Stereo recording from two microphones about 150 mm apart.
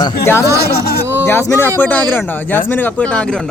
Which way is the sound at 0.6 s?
90° left.